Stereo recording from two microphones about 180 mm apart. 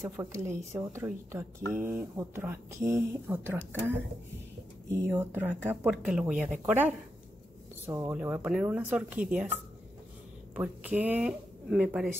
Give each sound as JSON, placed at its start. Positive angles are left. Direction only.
{"t": 0.2, "sound": "a woman's voice", "side_deg": -15}
{"t": 5.0, "sound": "a woman's voice", "side_deg": -10}